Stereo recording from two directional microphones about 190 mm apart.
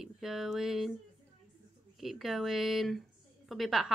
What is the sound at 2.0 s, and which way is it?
Speech, centre (ahead or behind).